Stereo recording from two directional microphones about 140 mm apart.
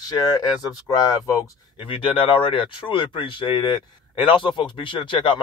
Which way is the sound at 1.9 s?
35° left (ahead or behind).